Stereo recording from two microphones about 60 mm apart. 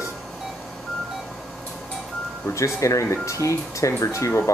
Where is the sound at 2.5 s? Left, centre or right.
Left.